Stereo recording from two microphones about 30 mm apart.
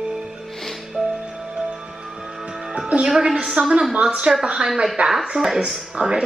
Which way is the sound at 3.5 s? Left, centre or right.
Right.